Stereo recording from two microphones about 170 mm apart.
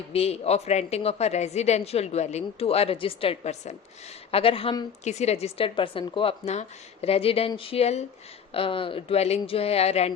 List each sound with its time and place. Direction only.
0.1 s a woman's voice: 40° left (ahead or behind)
5.0 s a woman's voice: 40° left (ahead or behind)